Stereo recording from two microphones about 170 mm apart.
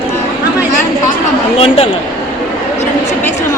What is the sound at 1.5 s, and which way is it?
Speech, 35° left (ahead or behind).